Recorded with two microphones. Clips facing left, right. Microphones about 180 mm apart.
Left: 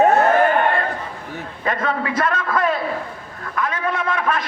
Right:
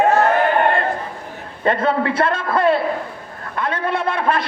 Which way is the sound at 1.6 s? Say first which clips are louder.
Right 5 dB; 30° right (ahead or behind).